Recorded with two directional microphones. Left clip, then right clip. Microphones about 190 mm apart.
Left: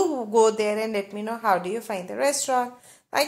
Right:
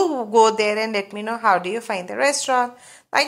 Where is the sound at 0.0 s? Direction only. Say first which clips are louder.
Right 4 dB; 10° right (ahead or behind).